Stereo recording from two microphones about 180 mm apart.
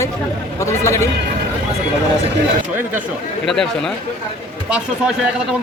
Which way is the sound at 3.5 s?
5° left (ahead or behind).